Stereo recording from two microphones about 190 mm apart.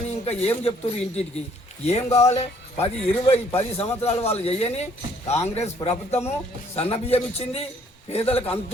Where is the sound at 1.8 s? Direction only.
35° left (ahead or behind).